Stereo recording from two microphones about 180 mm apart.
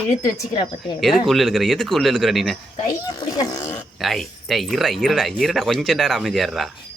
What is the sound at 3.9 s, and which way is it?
Speech, centre (ahead or behind).